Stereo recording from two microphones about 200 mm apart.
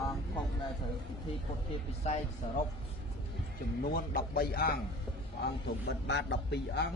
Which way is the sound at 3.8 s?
45° left (ahead or behind).